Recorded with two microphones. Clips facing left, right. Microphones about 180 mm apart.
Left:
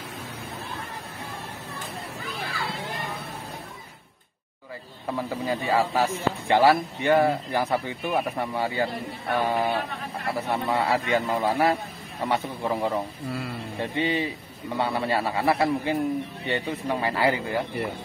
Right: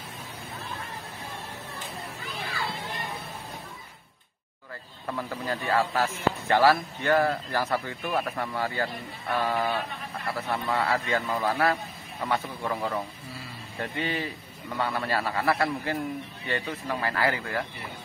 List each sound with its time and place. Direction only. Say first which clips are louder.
5.0 s speech: left 4 dB; 15° left (ahead or behind)
13.3 s speech: left 10 dB; 65° left (ahead or behind)
13.7 s speech: left 4 dB; 20° left (ahead or behind)